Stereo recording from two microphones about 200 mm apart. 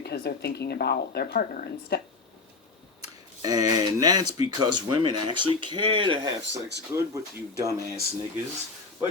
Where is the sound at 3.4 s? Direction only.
20° right (ahead or behind).